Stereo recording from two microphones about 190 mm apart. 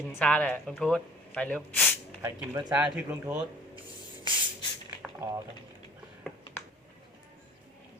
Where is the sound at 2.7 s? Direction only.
10° right (ahead or behind).